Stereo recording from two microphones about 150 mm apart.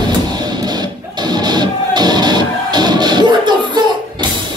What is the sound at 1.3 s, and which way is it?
Music, 30° right (ahead or behind).